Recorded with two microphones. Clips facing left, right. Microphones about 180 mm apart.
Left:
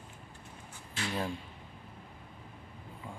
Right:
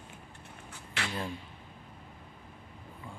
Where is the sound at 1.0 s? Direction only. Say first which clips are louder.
Even; 75° right (ahead or behind).